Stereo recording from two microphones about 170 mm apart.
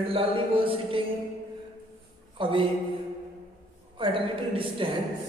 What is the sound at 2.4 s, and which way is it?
Speech, 30° right (ahead or behind).